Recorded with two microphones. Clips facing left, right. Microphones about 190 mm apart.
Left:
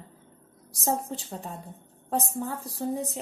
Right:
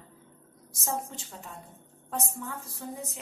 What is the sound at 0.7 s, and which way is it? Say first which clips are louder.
A woman's voice: left 5 dB; 35° left (ahead or behind).